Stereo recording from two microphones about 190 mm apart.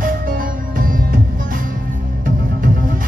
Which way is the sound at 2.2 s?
45° right (ahead or behind).